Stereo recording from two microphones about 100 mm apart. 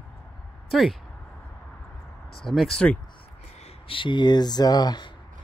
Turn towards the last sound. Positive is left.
turn(degrees=45)  # may be behind; listen again after turning